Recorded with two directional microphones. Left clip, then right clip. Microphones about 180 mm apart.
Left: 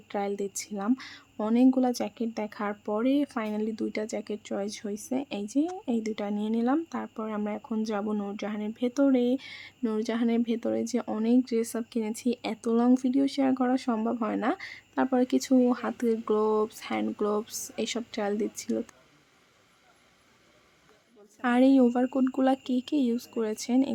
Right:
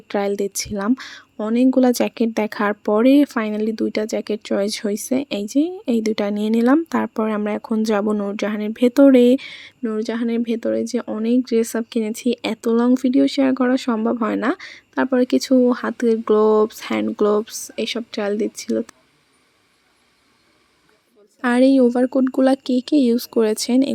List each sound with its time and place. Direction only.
0.1 s speech: 25° right (ahead or behind)
9.8 s speech: 10° right (ahead or behind)
17.7 s speech: 15° right (ahead or behind)
21.4 s speech: 20° right (ahead or behind)